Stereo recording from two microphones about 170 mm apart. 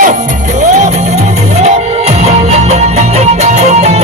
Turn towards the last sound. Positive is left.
turn(degrees=-40)  # may be behind; listen again after turning